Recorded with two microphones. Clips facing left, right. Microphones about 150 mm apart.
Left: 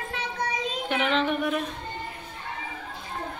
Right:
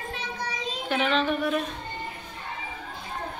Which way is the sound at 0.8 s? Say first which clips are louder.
Right 1 dB; 15° left (ahead or behind).